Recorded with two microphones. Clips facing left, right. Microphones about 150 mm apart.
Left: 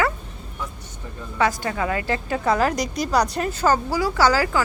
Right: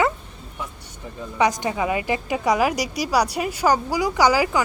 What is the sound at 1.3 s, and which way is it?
Speech, 20° right (ahead or behind).